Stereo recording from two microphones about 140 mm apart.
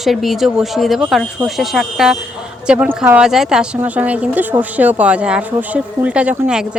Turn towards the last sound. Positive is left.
turn(degrees=-15)  # may be behind; listen again after turning